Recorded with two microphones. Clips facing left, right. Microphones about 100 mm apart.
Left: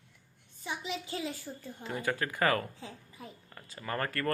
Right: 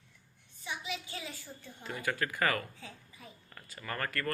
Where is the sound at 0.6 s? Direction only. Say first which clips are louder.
Left 3 dB; 35° left (ahead or behind).